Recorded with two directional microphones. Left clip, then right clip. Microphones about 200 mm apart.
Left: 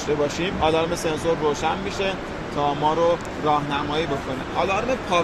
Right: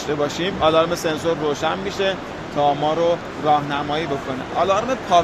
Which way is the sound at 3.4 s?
35° right (ahead or behind).